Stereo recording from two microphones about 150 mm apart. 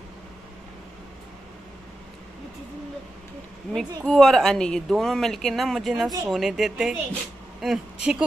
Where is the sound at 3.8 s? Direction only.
5° left (ahead or behind).